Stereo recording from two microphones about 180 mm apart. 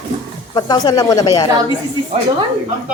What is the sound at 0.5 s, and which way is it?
Speech, 20° left (ahead or behind).